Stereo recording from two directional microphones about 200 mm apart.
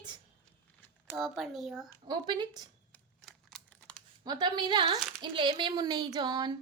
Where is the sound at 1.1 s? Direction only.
Centre (ahead or behind).